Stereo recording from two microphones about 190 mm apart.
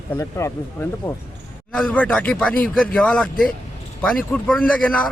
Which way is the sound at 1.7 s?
5° left (ahead or behind).